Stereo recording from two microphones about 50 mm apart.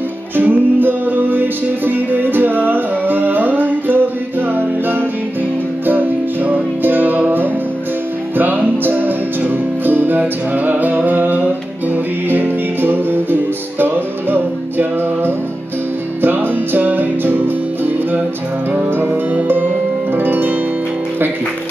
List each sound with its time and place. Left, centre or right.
0.4 s music: right
5.9 s music: right